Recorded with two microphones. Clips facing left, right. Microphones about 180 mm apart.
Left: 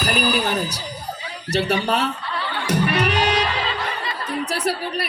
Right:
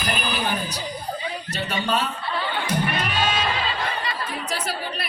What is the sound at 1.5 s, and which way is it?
Speech, 75° left (ahead or behind).